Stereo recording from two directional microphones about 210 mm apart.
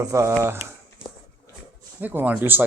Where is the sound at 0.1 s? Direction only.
15° right (ahead or behind).